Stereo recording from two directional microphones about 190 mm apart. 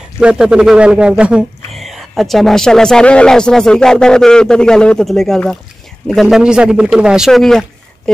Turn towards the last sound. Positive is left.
turn(degrees=0)  # may be behind; listen again after turning